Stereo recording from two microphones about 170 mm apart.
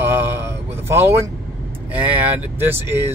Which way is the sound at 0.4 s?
15° right (ahead or behind).